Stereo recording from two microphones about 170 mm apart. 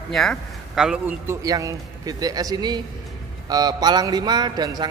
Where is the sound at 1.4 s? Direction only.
20° right (ahead or behind).